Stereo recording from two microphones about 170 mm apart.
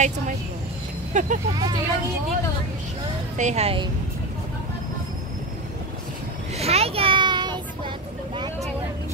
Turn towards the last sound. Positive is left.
turn(degrees=-25)  # may be behind; listen again after turning